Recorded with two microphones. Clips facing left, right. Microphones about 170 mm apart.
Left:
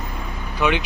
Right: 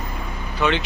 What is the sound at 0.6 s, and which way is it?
Speech, 15° left (ahead or behind).